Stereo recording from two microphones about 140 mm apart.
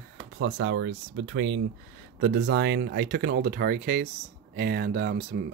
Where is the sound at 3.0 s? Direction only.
90° right.